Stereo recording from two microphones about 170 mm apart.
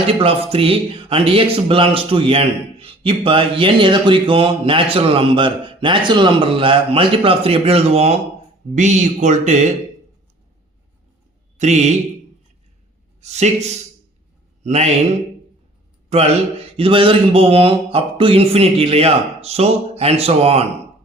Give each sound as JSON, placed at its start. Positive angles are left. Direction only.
{"t": 0.2, "sound": "speech", "side_deg": -35}
{"t": 11.5, "sound": "speech", "side_deg": -45}
{"t": 13.2, "sound": "a man's voice", "side_deg": -40}
{"t": 16.0, "sound": "speech", "side_deg": -40}